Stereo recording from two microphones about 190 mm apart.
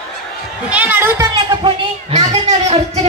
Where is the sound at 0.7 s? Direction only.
10° right (ahead or behind).